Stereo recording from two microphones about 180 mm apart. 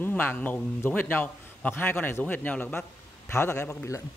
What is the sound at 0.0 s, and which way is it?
A man's voice, 10° left (ahead or behind).